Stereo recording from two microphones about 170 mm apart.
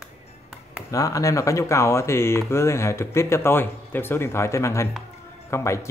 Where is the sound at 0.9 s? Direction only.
20° left (ahead or behind).